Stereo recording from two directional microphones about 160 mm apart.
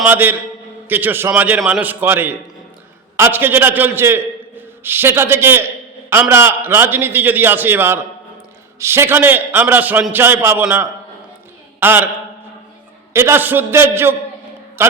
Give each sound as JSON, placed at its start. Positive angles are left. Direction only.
{"t": 0.0, "sound": "a man's voice", "side_deg": -15}
{"t": 13.1, "sound": "a man's voice", "side_deg": -15}